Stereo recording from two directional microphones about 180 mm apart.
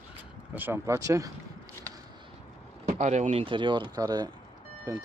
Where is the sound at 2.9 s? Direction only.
40° right (ahead or behind).